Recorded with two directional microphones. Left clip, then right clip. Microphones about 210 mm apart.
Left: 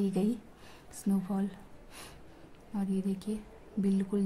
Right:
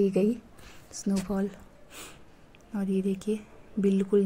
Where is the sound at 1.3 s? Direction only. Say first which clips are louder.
Right 5 dB; 15° right (ahead or behind).